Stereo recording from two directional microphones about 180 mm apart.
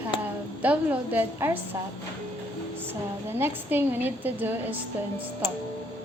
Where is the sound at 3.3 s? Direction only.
10° right (ahead or behind).